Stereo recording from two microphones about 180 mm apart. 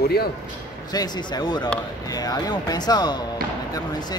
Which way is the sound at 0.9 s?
25° left (ahead or behind).